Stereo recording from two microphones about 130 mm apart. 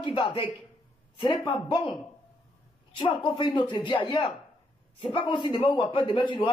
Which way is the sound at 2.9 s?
35° left (ahead or behind).